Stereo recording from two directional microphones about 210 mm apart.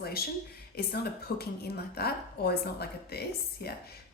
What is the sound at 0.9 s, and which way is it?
A woman's voice, 50° left (ahead or behind).